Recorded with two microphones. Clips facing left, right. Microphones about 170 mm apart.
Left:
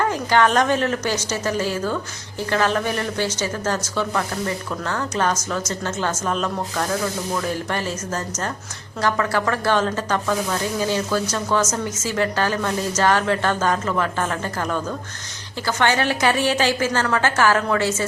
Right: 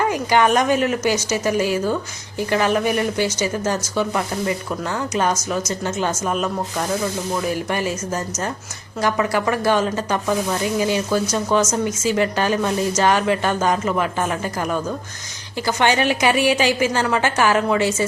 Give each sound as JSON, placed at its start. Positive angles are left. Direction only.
{"t": 0.0, "sound": "speech", "side_deg": -15}